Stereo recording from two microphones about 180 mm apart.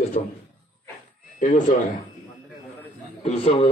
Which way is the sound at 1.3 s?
45° left (ahead or behind).